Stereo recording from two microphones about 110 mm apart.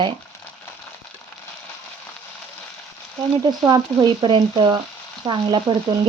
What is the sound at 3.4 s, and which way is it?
Speech, 35° right (ahead or behind).